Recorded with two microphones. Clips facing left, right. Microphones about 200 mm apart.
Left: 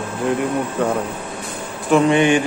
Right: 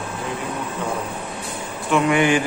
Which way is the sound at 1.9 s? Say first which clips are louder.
Left 4 dB; 25° left (ahead or behind).